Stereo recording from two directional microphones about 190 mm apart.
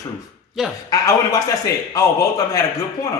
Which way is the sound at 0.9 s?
20° left (ahead or behind).